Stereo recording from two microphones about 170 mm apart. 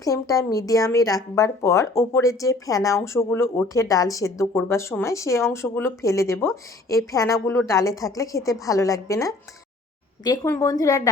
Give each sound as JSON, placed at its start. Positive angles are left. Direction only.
{"t": 0.0, "sound": "a woman's voice", "side_deg": 20}